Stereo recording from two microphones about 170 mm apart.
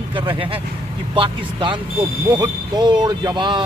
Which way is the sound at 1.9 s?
20° right (ahead or behind).